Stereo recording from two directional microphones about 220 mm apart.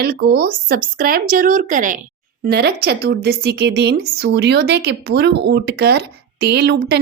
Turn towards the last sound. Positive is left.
turn(degrees=-50)  # may be behind; listen again after turning